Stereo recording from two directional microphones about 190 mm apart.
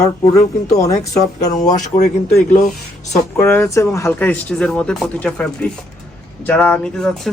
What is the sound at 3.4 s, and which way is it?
A man's voice, 10° left (ahead or behind).